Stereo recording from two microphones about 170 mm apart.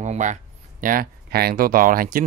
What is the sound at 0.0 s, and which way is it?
Speech, 45° right (ahead or behind).